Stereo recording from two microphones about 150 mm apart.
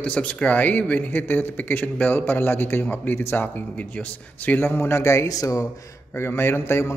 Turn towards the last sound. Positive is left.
turn(degrees=15)  # may be behind; listen again after turning